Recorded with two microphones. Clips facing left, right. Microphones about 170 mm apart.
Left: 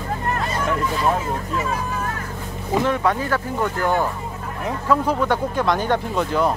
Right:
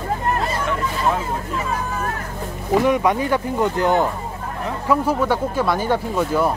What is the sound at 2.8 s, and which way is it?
Speech, 15° right (ahead or behind).